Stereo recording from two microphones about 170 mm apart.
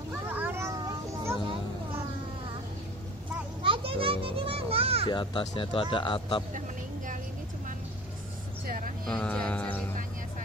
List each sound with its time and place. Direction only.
0.3 s a sound: 10° right (ahead or behind)
3.6 s children playing: 30° right (ahead or behind)
5.1 s speech: 30° left (ahead or behind)
8.6 s vehicle: 55° right (ahead or behind)
9.2 s music: 5° left (ahead or behind)